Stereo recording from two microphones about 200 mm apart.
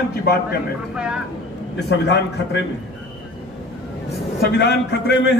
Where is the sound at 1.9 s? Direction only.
60° left (ahead or behind).